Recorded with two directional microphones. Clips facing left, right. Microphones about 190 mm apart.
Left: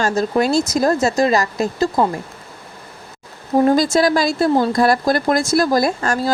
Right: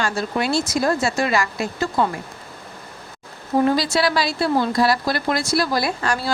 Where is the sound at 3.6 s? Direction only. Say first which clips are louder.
Left 5 dB; 45° left (ahead or behind).